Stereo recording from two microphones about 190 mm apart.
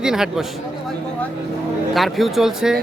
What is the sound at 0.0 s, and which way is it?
Speech, 5° right (ahead or behind).